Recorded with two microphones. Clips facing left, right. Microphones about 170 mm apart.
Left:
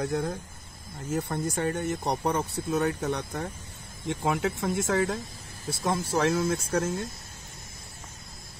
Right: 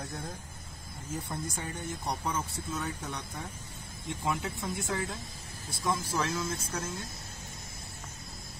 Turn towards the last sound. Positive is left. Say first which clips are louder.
# left 9 dB
turn(degrees=60)  # may be behind; listen again after turning